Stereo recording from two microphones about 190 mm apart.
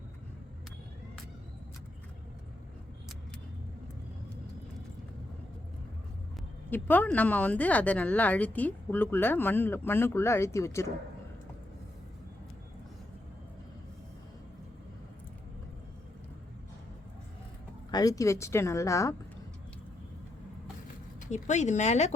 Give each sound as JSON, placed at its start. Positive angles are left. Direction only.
{"t": 6.7, "sound": "speech", "side_deg": 10}
{"t": 17.9, "sound": "speech", "side_deg": 20}
{"t": 21.2, "sound": "speech", "side_deg": 40}